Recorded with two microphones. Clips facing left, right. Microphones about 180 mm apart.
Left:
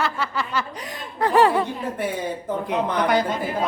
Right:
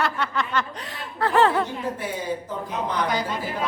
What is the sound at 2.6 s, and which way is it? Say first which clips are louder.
Speech: left 4 dB; 65° left (ahead or behind).